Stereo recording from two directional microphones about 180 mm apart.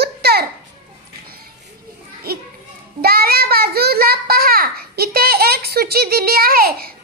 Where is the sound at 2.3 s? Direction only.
55° right (ahead or behind).